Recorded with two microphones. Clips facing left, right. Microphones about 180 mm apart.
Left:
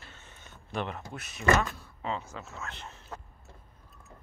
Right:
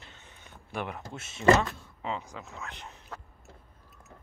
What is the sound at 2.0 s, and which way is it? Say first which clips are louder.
Speech: even; 15° right (ahead or behind).